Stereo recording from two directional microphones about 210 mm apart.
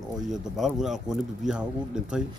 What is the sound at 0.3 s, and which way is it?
Speech, centre (ahead or behind).